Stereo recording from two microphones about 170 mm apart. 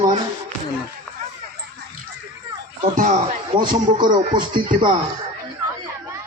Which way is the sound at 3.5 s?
25° right (ahead or behind).